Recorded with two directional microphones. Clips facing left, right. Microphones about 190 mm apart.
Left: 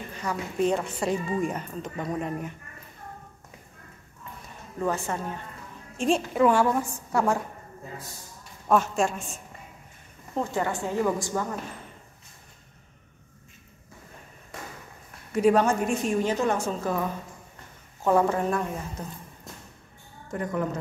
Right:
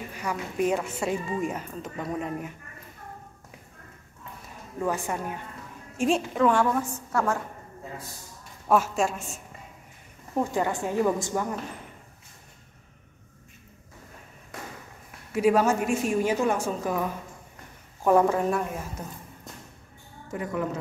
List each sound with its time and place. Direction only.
0.1 s speech: 10° right (ahead or behind)
4.7 s a woman's voice: 10° right (ahead or behind)
5.9 s a woman's voice: centre (ahead or behind); by 7.3 s 15° left (ahead or behind)
8.6 s speech: 5° right (ahead or behind)
10.3 s a woman's voice: 15° right (ahead or behind)
15.0 s a woman's voice: 5° right (ahead or behind)
18.2 s speech: 5° right (ahead or behind)